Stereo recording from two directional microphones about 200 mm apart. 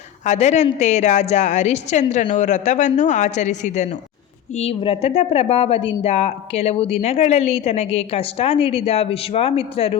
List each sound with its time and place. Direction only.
0.3 s a woman's voice: 35° left (ahead or behind)